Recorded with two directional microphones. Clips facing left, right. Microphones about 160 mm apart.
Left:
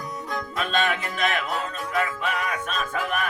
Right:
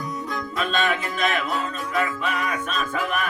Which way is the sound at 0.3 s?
55° left (ahead or behind).